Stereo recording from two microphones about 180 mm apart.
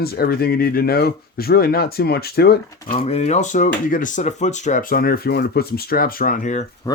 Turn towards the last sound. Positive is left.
turn(degrees=45)  # may be behind; listen again after turning